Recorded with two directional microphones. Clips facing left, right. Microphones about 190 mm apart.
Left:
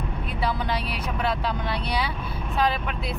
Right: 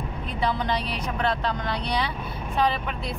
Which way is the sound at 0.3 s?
5° left (ahead or behind).